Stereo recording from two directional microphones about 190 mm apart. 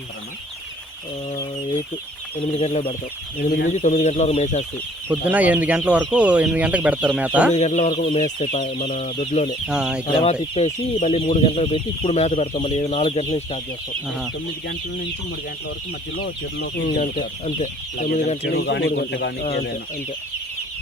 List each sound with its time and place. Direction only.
2.4 s speech: 30° left (ahead or behind)
3.3 s speech: 50° left (ahead or behind)
5.0 s speech: 10° right (ahead or behind)
7.5 s speech: 35° left (ahead or behind)
9.6 s chicken: 5° right (ahead or behind)
10.5 s speech: 30° left (ahead or behind)
16.1 s speech: 50° left (ahead or behind)
16.9 s speech: 30° left (ahead or behind)
18.4 s speech: 60° left (ahead or behind)